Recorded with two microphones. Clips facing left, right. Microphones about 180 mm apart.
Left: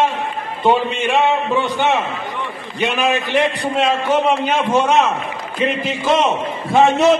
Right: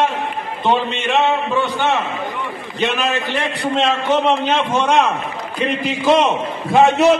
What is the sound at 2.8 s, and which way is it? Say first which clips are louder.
A man's voice: left 1 dB; 10° left (ahead or behind).